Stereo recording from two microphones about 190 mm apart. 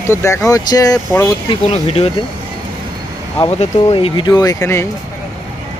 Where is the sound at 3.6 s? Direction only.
30° left (ahead or behind).